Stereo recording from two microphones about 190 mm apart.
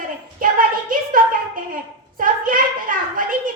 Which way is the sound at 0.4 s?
45° right (ahead or behind).